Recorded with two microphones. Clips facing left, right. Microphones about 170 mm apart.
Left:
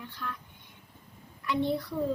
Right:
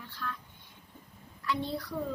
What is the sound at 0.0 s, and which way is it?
Speech, 15° left (ahead or behind).